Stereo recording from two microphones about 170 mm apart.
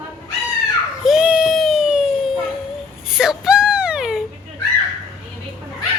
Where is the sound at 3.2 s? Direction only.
5° right (ahead or behind).